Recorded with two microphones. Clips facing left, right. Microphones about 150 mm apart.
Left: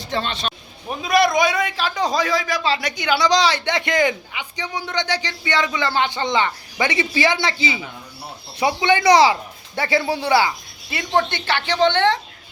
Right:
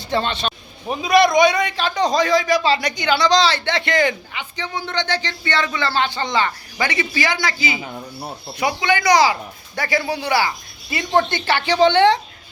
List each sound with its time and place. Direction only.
0.9 s a man's voice: centre (ahead or behind); by 10.5 s 25° left (ahead or behind)
10.8 s a woman's voice: centre (ahead or behind)